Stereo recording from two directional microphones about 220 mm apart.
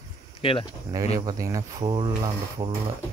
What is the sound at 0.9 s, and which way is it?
Speech, 15° right (ahead or behind).